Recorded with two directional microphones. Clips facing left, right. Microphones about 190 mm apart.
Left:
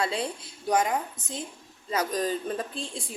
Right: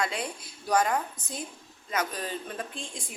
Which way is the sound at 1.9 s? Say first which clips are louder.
Left 5 dB; 35° left (ahead or behind).